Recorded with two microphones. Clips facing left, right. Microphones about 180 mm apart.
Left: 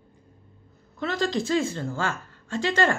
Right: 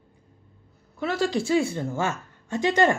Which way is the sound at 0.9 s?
10° right (ahead or behind).